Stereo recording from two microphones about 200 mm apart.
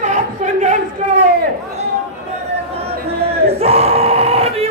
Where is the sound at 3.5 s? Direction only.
30° right (ahead or behind).